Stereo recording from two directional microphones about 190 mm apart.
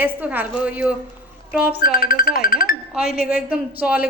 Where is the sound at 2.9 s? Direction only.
5° right (ahead or behind).